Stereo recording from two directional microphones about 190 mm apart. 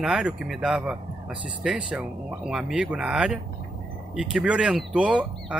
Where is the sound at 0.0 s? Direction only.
5° right (ahead or behind).